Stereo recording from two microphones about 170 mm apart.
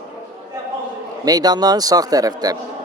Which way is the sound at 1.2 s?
20° right (ahead or behind).